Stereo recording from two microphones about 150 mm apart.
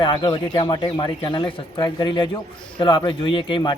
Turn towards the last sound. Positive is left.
turn(degrees=30)  # may be behind; listen again after turning